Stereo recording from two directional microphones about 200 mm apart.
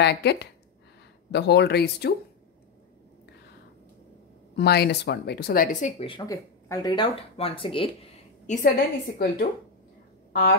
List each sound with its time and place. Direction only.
0.0 s speech: 55° left (ahead or behind)
4.6 s speech: 55° left (ahead or behind); by 7.9 s 25° left (ahead or behind)
8.5 s a woman's voice: 45° left (ahead or behind)